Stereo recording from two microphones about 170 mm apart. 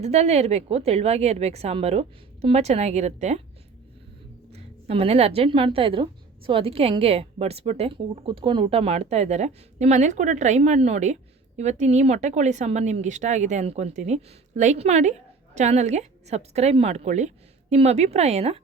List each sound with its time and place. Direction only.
0.0 s a woman's voice: 40° right (ahead or behind)
4.5 s a woman's voice: 35° right (ahead or behind)